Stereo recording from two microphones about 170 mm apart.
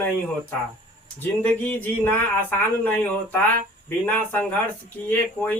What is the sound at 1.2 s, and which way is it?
Speech, 10° left (ahead or behind).